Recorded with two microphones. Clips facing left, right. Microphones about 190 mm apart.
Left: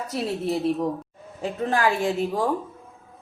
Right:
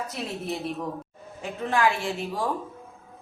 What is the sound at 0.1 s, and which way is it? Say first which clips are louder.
Speech: left 6 dB; 35° left (ahead or behind).